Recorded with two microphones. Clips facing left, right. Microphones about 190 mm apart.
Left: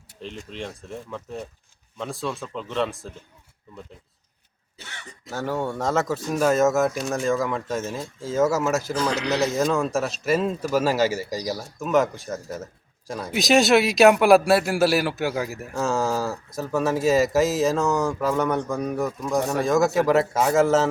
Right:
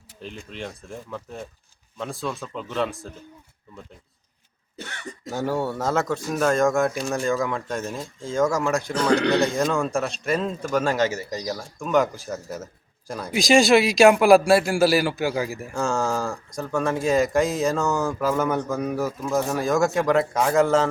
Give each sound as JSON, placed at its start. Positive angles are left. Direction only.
{"t": 0.2, "sound": "a man's voice", "side_deg": 0}
{"t": 5.3, "sound": "a man's voice", "side_deg": -10}